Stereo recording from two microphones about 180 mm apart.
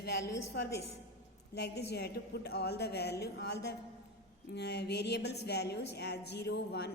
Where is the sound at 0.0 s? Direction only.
70° left (ahead or behind).